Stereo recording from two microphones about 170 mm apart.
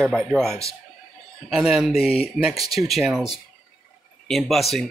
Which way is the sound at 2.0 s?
35° left (ahead or behind).